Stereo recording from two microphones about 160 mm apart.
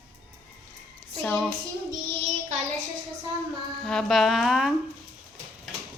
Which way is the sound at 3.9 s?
5° left (ahead or behind).